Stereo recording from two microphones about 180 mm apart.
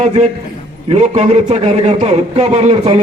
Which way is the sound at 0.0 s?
40° right (ahead or behind).